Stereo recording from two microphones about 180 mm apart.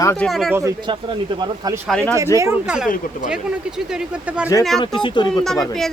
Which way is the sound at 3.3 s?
5° right (ahead or behind).